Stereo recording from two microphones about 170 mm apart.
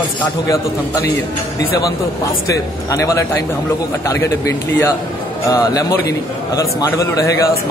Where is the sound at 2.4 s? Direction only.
20° left (ahead or behind).